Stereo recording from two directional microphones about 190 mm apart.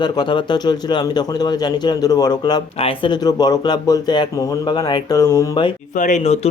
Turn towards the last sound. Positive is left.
turn(degrees=35)  # may be behind; listen again after turning